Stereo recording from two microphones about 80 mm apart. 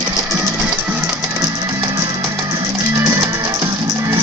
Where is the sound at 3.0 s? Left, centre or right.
Right.